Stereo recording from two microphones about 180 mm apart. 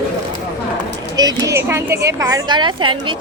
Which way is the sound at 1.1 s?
20° right (ahead or behind).